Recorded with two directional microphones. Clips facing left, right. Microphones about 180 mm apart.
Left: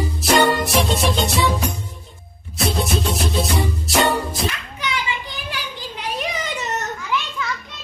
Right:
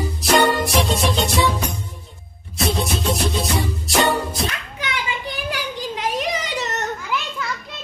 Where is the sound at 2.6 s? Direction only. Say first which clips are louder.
Left 1 dB; centre (ahead or behind).